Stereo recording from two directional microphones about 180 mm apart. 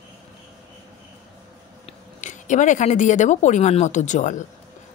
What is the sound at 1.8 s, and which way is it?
Speech, 40° left (ahead or behind).